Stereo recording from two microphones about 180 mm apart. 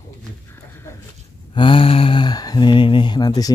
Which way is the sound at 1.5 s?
30° left (ahead or behind).